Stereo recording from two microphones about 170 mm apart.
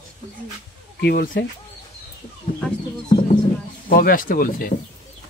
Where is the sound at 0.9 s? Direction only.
70° left (ahead or behind).